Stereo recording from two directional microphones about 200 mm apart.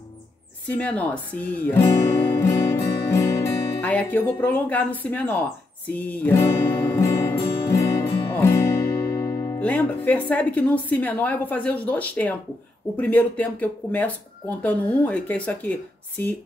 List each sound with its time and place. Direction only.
0.7 s speech: 5° left (ahead or behind)
5.9 s music: 10° left (ahead or behind)
9.1 s speech: 15° left (ahead or behind)